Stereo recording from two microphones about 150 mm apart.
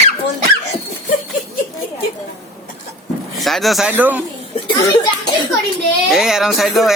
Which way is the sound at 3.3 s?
Centre (ahead or behind).